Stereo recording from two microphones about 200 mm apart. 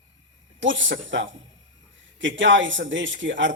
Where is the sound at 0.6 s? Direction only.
70° right (ahead or behind).